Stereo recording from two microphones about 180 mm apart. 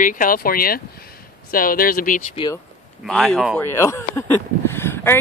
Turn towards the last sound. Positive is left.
turn(degrees=15)  # may be behind; listen again after turning